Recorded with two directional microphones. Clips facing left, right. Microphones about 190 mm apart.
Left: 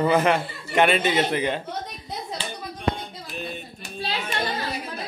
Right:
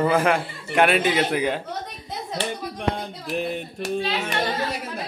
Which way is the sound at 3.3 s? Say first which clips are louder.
Right 9 dB; 90° right.